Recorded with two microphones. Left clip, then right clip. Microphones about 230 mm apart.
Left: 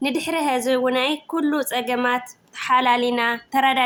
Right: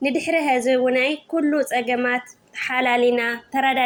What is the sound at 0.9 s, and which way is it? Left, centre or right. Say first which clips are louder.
Speech: right 1 dB; left.